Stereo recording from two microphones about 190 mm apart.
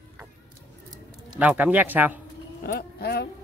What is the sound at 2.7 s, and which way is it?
Speech, 55° left (ahead or behind).